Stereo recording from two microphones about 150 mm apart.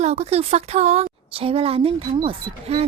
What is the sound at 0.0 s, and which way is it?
A woman's voice, 45° right (ahead or behind).